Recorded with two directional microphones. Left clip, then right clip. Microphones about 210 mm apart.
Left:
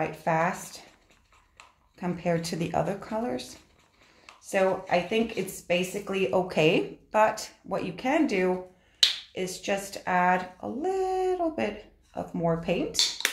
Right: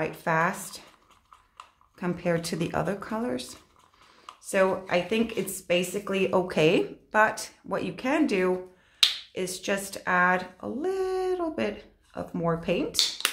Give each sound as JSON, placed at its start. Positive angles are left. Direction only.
{"t": 0.0, "sound": "speech", "side_deg": -25}
{"t": 2.0, "sound": "speech", "side_deg": -20}
{"t": 4.5, "sound": "speech", "side_deg": -25}